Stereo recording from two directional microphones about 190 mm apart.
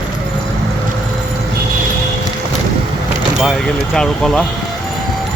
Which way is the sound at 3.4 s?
Centre (ahead or behind).